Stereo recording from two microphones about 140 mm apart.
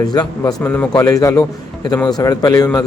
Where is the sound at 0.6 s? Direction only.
15° left (ahead or behind).